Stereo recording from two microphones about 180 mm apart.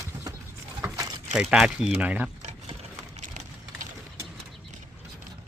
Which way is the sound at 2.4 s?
40° right (ahead or behind).